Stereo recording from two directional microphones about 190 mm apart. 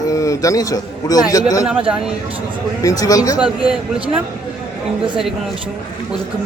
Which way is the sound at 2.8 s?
20° left (ahead or behind).